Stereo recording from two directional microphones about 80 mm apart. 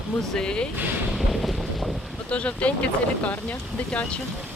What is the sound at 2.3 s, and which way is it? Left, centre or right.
Speech, centre.